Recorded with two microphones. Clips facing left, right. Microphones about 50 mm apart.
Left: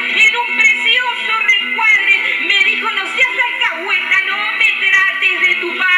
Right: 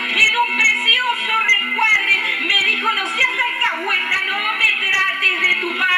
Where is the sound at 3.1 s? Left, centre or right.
Centre.